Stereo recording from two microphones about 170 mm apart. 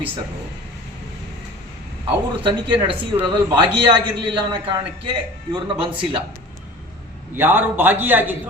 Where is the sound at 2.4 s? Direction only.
30° right (ahead or behind).